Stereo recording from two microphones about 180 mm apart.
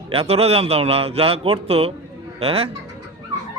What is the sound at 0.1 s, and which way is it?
A man's voice, 35° right (ahead or behind).